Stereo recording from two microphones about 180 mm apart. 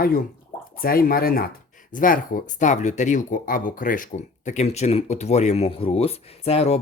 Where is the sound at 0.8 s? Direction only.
55° left (ahead or behind).